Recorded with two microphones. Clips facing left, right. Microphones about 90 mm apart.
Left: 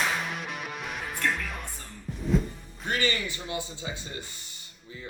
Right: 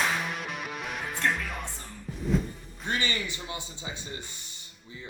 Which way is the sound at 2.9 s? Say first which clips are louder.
Left 2 dB; 20° right (ahead or behind).